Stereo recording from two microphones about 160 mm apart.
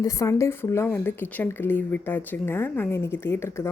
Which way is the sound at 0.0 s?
20° left (ahead or behind).